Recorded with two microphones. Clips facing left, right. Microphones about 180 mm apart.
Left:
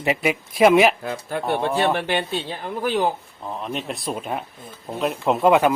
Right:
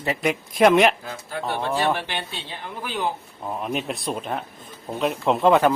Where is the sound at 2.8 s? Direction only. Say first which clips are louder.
Left 7 dB; 40° left (ahead or behind).